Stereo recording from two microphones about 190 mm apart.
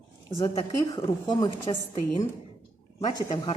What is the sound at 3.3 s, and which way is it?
Speech, 25° left (ahead or behind).